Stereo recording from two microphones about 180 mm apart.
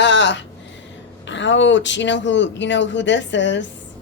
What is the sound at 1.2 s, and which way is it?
Speech, 90° left.